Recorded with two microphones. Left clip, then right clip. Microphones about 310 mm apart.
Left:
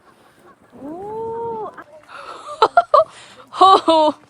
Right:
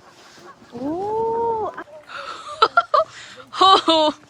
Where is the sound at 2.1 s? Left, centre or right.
Centre.